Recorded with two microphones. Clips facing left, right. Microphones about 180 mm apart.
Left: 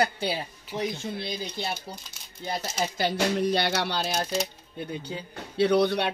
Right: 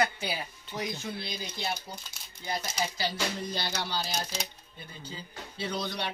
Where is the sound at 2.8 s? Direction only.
55° left (ahead or behind).